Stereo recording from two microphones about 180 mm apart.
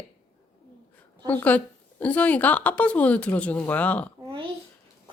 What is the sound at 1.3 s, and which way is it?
A woman's voice, 10° left (ahead or behind).